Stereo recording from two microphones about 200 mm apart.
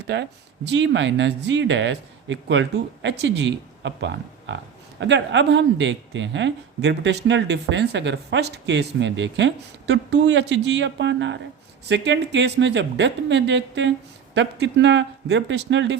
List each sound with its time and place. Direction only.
0.0 s speech: 60° right (ahead or behind)